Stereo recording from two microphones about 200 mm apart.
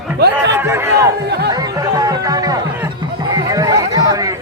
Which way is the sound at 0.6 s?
10° right (ahead or behind).